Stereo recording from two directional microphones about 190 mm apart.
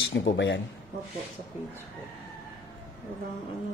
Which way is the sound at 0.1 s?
75° left (ahead or behind).